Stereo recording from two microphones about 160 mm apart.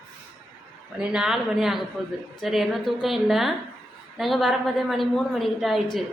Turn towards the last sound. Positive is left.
turn(degrees=0)  # may be behind; listen again after turning